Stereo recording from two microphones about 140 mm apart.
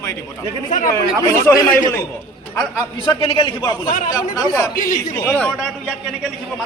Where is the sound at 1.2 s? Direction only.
20° left (ahead or behind).